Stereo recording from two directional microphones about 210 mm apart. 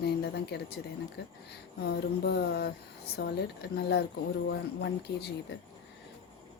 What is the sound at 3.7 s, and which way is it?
Speech, 50° left (ahead or behind).